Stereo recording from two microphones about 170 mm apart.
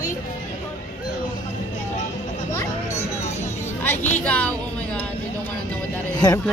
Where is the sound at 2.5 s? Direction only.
15° left (ahead or behind).